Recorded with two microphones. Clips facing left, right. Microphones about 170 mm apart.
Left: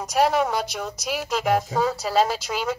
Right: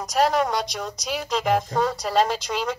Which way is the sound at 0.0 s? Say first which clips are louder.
Even; 5° left (ahead or behind).